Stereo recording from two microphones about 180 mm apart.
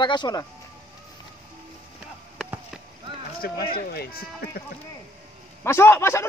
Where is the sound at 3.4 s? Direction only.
55° left (ahead or behind).